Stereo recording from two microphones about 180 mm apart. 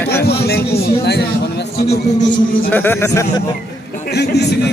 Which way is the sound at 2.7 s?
10° left (ahead or behind).